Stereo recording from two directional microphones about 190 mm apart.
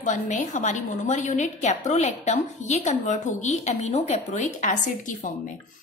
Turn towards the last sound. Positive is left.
turn(degrees=40)  # may be behind; listen again after turning